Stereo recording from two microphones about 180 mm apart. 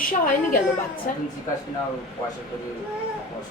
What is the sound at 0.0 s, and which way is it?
A woman's voice, 50° left (ahead or behind).